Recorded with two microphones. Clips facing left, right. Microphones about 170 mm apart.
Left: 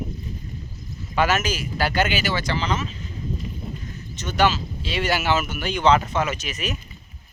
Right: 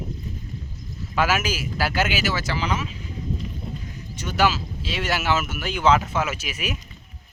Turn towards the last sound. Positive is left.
turn(degrees=-10)  # may be behind; listen again after turning